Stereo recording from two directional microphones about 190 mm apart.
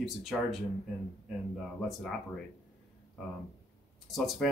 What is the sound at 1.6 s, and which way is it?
Speech, centre (ahead or behind).